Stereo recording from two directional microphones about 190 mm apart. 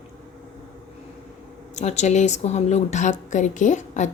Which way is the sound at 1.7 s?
35° left (ahead or behind).